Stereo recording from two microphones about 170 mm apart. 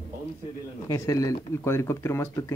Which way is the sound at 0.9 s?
20° left (ahead or behind).